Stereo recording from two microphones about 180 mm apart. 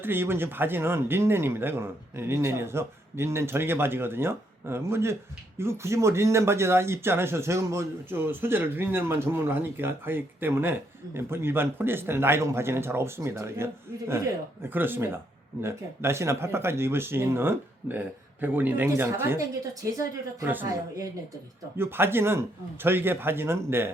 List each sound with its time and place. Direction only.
0.0 s speech: 10° right (ahead or behind)